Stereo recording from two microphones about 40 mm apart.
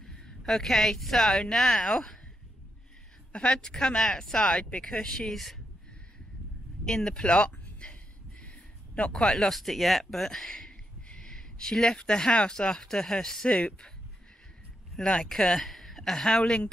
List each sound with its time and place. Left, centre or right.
0.0 s a woman's voice: centre
3.3 s speech: left
6.8 s a sound: centre
8.5 s a sound: left
9.1 s speech: centre
9.6 s speech: centre
11.1 s a sound: centre
12.0 s speech: left
15.0 s a woman's voice: centre